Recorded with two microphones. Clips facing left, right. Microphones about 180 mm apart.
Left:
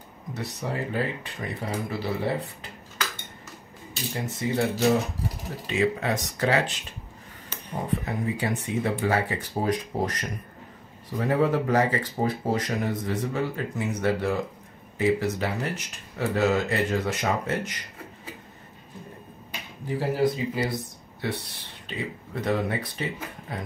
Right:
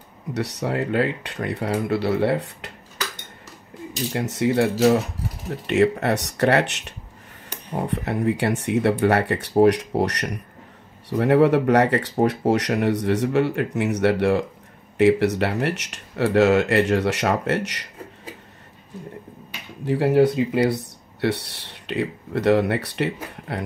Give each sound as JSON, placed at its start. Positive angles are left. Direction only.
{"t": 0.3, "sound": "speech", "side_deg": -75}
{"t": 4.1, "sound": "speech", "side_deg": -75}
{"t": 19.8, "sound": "speech", "side_deg": -70}